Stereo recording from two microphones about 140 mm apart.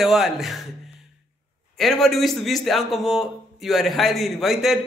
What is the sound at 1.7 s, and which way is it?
A man's voice, centre (ahead or behind).